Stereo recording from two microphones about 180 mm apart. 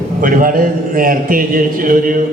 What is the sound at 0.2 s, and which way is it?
A man's voice, 50° right (ahead or behind).